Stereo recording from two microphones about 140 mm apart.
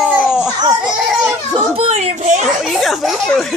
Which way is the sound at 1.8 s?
50° right (ahead or behind).